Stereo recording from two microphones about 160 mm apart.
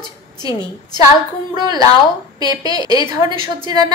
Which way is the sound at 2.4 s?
25° right (ahead or behind).